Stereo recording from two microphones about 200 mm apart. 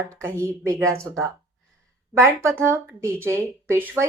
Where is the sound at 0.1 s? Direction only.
15° right (ahead or behind).